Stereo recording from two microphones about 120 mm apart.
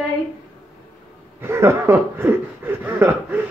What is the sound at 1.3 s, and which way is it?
Speech, 20° right (ahead or behind).